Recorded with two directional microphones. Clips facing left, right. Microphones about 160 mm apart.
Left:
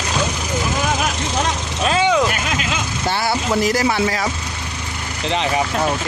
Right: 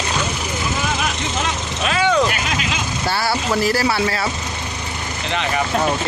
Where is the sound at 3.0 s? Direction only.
20° left (ahead or behind).